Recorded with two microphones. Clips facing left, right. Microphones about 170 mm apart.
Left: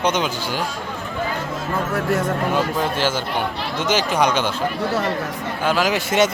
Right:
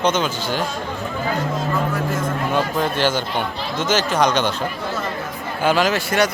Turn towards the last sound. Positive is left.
turn(degrees=20)  # may be behind; listen again after turning